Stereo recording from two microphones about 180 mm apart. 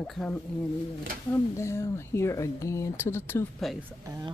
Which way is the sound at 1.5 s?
15° left (ahead or behind).